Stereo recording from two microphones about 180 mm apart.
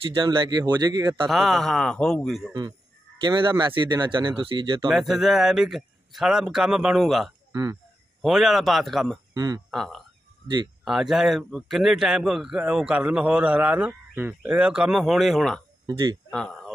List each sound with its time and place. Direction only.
0.0 s speech: 25° right (ahead or behind)
1.3 s a man's voice: centre (ahead or behind)
3.2 s speech: 25° right (ahead or behind)
4.8 s a man's voice: centre (ahead or behind)
7.5 s speech: 20° right (ahead or behind)
8.2 s a man's voice: centre (ahead or behind)
9.3 s speech: 20° right (ahead or behind)
9.7 s a man's voice: centre (ahead or behind)
16.3 s a sound: 5° left (ahead or behind)